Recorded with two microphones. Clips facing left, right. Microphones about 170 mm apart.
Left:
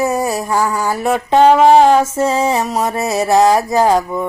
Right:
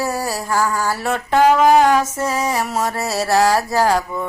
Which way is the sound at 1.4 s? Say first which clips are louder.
Left 4 dB; 25° left (ahead or behind).